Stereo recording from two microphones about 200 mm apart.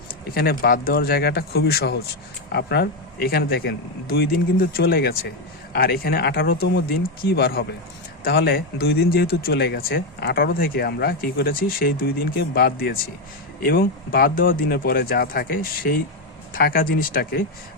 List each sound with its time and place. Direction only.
0.3 s speech: 50° left (ahead or behind)